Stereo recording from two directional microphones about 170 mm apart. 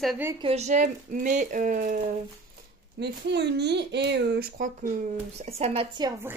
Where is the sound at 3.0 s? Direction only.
80° right.